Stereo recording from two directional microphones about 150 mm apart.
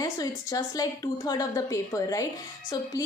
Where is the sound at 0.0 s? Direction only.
25° left (ahead or behind).